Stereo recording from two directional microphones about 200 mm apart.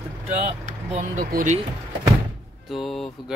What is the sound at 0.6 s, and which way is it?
Speech, 40° right (ahead or behind).